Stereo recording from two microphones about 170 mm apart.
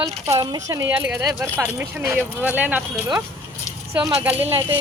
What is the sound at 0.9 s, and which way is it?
Speech, 10° right (ahead or behind).